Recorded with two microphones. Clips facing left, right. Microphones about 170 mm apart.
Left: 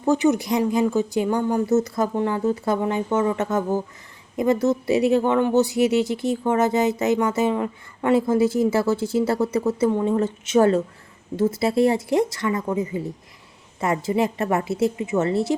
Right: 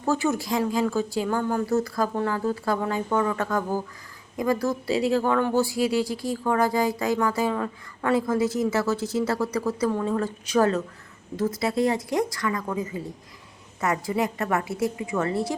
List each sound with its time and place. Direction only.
0.0 s speech: 20° left (ahead or behind)